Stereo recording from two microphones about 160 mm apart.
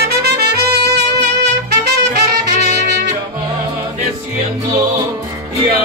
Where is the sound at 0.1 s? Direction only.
85° right.